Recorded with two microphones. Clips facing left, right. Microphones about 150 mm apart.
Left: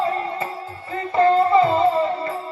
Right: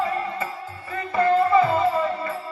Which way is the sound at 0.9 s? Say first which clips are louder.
Left 3 dB; 25° left (ahead or behind).